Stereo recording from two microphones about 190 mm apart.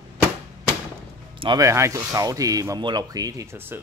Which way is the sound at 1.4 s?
20° right (ahead or behind).